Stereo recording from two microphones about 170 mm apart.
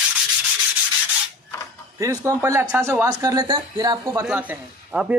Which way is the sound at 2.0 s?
20° right (ahead or behind).